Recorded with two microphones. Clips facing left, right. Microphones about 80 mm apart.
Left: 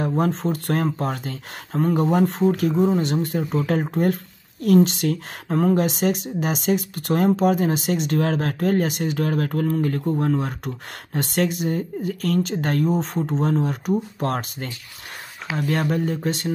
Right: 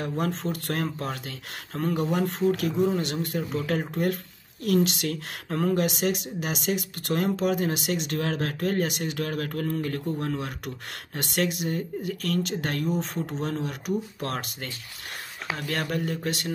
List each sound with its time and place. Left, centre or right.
0.0 s speech: left